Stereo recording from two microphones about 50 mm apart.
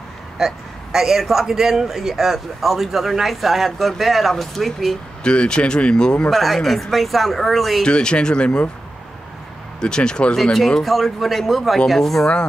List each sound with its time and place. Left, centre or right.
0.4 s speech: centre
5.2 s speech: centre
6.3 s speech: centre
7.8 s speech: centre
9.8 s speech: centre
10.3 s speech: centre